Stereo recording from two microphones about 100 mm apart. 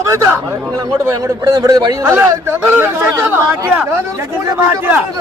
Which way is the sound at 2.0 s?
20° right (ahead or behind).